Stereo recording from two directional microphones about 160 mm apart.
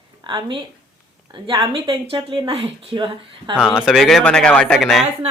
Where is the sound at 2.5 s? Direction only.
35° right (ahead or behind).